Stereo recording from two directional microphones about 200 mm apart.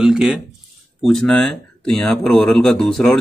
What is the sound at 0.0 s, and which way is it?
A man's voice, 5° right (ahead or behind).